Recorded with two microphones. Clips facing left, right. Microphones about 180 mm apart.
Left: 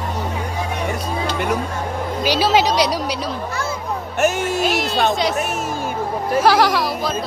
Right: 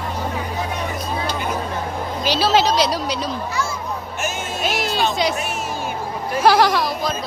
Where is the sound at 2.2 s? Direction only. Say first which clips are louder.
Left 1 dB; 10° left (ahead or behind).